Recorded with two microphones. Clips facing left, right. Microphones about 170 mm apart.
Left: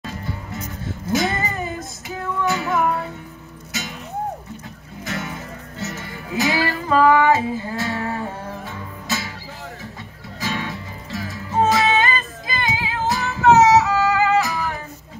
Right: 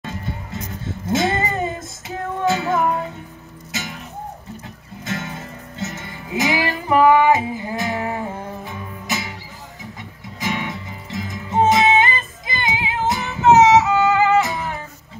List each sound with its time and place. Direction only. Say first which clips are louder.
1.0 s music: right 2 dB; 25° right (ahead or behind)
5.0 s music: right 1 dB; 25° right (ahead or behind)
10.4 s music: right 1 dB; 20° right (ahead or behind)